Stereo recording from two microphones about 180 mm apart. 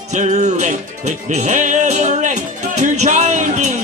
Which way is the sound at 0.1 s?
40° right (ahead or behind).